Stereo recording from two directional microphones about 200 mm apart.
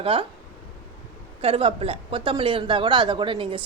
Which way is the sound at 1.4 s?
25° right (ahead or behind).